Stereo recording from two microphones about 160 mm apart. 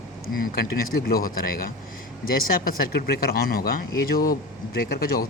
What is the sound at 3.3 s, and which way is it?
Speech, 70° left (ahead or behind).